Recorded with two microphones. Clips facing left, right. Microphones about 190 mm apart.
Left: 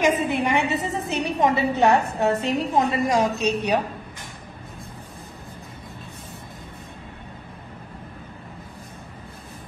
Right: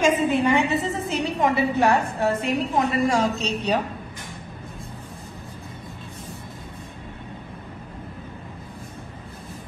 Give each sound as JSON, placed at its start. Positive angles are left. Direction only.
{"t": 0.0, "sound": "a woman's voice", "side_deg": 15}